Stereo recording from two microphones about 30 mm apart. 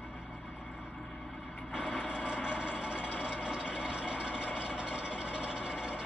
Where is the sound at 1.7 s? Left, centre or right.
Right.